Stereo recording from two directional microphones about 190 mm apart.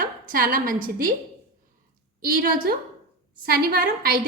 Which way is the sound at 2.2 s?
45° right (ahead or behind).